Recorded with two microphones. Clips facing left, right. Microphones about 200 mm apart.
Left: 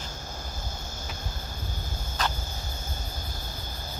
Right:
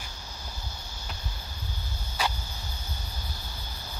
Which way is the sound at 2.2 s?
10° right (ahead or behind).